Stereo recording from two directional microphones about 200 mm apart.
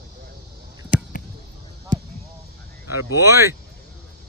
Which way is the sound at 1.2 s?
45° left (ahead or behind).